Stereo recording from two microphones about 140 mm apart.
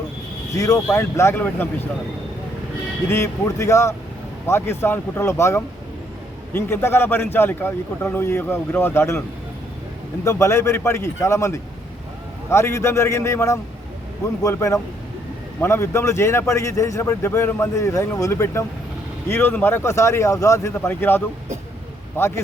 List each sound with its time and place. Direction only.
0.5 s speech: 25° left (ahead or behind)
3.1 s a man's voice: 20° left (ahead or behind)
10.2 s a man's voice: 20° left (ahead or behind)